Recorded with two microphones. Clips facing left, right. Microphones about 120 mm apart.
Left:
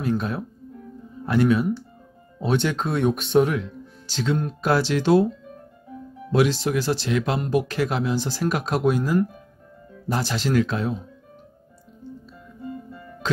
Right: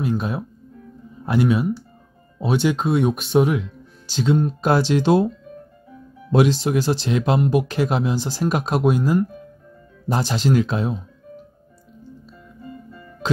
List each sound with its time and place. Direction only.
0.0 s speech: 15° right (ahead or behind)
6.3 s speech: 20° right (ahead or behind)